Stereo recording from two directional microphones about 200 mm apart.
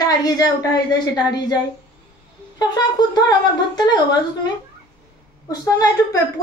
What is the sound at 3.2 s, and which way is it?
Speech, 20° left (ahead or behind).